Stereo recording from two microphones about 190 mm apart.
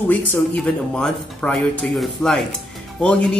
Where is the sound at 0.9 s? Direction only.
5° left (ahead or behind).